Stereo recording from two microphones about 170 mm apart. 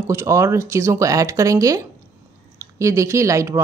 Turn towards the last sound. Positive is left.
turn(degrees=-15)  # may be behind; listen again after turning